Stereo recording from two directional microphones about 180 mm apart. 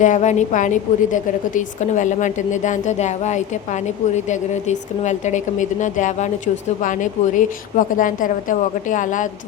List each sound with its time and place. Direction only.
0.0 s a woman's voice: 40° left (ahead or behind)